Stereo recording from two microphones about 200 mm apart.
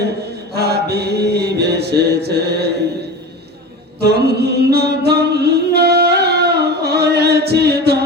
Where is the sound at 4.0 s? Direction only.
55° right (ahead or behind).